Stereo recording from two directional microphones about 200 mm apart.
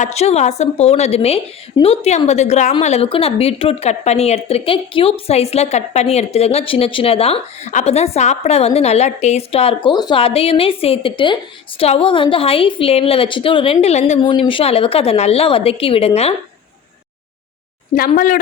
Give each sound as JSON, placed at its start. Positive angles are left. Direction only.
{"t": 0.0, "sound": "a woman's voice", "side_deg": 30}